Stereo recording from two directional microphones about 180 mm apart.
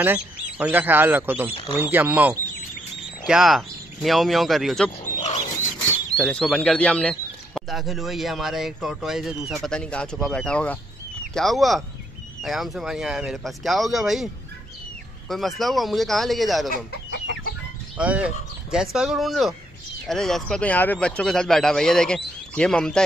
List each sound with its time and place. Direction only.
0.0 s a man's voice: 10° right (ahead or behind)
5.0 s wild animals: 40° left (ahead or behind)
6.1 s speech: 5° left (ahead or behind)
16.7 s chicken: 65° left (ahead or behind)
17.9 s speech: 5° right (ahead or behind)